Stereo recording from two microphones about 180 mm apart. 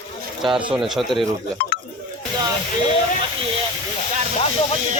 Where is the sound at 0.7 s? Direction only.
Centre (ahead or behind).